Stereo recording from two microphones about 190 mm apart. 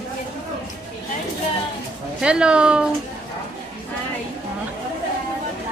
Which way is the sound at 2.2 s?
5° right (ahead or behind).